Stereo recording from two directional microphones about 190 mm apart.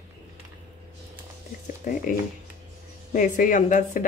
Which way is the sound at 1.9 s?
45° left (ahead or behind).